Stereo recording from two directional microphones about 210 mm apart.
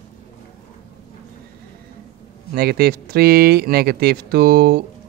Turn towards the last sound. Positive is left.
turn(degrees=-45)  # may be behind; listen again after turning